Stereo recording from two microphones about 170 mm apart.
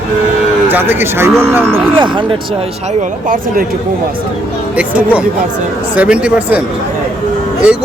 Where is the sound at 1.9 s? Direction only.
30° right (ahead or behind).